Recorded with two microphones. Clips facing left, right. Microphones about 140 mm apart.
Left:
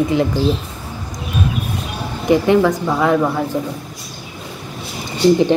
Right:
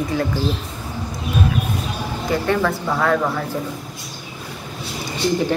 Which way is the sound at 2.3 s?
15° left (ahead or behind).